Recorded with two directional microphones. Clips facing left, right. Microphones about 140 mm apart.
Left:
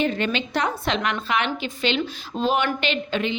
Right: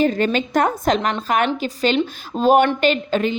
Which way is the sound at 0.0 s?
40° right (ahead or behind).